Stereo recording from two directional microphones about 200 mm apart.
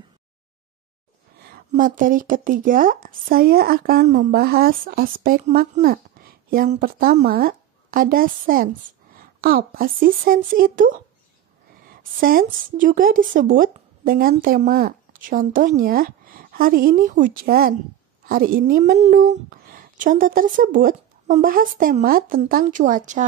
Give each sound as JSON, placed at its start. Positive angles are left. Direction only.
{"t": 1.4, "sound": "a woman's voice", "side_deg": -45}